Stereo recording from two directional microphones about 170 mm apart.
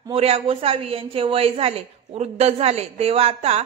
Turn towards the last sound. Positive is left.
turn(degrees=-40)  # may be behind; listen again after turning